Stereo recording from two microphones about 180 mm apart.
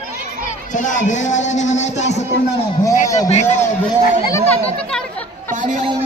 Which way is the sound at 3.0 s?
20° left (ahead or behind).